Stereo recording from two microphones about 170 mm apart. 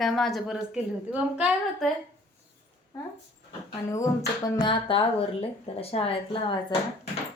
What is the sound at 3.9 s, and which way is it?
Speech, 20° left (ahead or behind).